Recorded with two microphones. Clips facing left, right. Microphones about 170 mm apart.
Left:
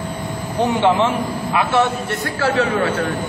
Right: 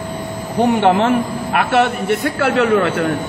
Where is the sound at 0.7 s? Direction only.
55° right (ahead or behind).